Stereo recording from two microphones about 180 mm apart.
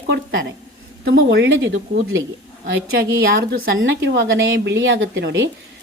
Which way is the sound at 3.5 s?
90° right.